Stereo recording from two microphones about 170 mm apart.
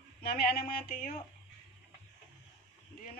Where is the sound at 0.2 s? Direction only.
65° left (ahead or behind).